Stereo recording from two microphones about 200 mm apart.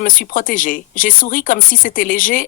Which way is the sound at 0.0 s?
40° left (ahead or behind).